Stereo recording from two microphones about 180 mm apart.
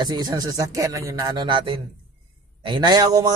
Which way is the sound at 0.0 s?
25° right (ahead or behind).